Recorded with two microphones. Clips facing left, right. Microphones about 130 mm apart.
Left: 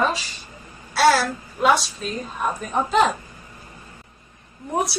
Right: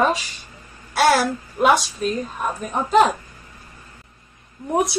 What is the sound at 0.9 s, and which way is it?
Speech, 15° right (ahead or behind).